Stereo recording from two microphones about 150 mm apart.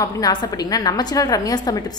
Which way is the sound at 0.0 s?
25° left (ahead or behind).